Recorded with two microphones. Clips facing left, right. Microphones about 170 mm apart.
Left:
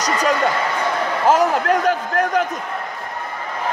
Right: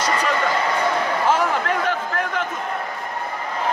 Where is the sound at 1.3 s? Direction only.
40° left (ahead or behind).